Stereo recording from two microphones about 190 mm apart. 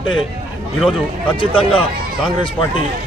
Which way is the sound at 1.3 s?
30° left (ahead or behind).